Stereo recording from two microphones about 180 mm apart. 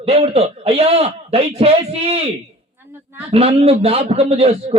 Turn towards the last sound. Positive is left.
turn(degrees=-35)  # may be behind; listen again after turning